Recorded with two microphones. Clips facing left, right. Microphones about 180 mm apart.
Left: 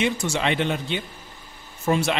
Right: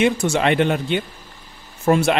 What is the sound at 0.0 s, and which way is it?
A man's voice, 55° right (ahead or behind).